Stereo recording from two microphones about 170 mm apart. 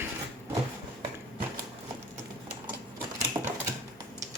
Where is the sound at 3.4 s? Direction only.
20° right (ahead or behind).